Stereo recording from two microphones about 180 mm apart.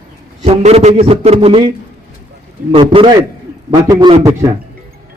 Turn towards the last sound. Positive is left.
turn(degrees=-15)  # may be behind; listen again after turning